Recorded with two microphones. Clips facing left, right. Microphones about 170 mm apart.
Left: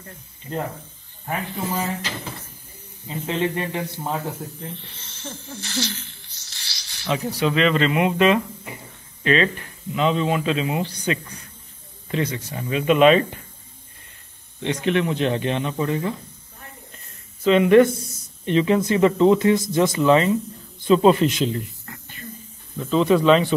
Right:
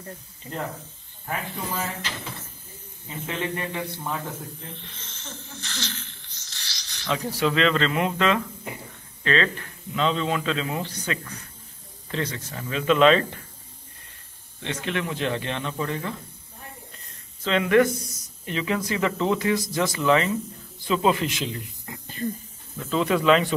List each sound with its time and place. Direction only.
3.3 s speech: 25° left (ahead or behind)
5.1 s a sound: 10° left (ahead or behind)
7.2 s speech: 5° left (ahead or behind)
14.6 s speech: 15° left (ahead or behind)
17.4 s speech: 20° left (ahead or behind); by 21.6 s 35° left (ahead or behind)
21.9 s whispering: 15° right (ahead or behind)
22.8 s speech: 15° left (ahead or behind)
23.0 s speech: 25° left (ahead or behind)